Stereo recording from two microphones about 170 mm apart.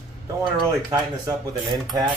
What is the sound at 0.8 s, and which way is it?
Speech, 20° right (ahead or behind).